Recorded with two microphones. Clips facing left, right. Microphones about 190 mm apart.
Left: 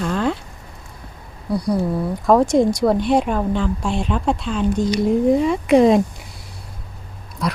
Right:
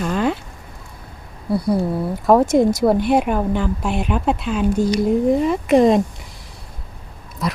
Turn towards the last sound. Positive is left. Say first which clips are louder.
# even
turn(degrees=0)  # may be behind; listen again after turning